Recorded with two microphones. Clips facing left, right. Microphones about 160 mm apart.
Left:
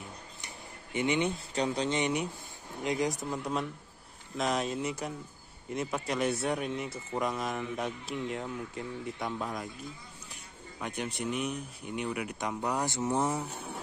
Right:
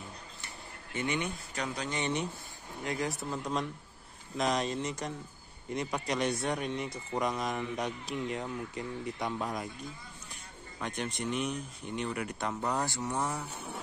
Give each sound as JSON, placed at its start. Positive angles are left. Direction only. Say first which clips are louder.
{"t": 0.9, "sound": "speech", "louder": "left 5 dB", "side_deg": 20}
{"t": 2.0, "sound": "speech", "louder": "left 2 dB", "side_deg": 10}
{"t": 10.8, "sound": "speech", "louder": "even", "side_deg": 10}